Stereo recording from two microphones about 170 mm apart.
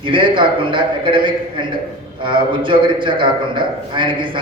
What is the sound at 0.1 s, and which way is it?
A man's voice, 30° right (ahead or behind).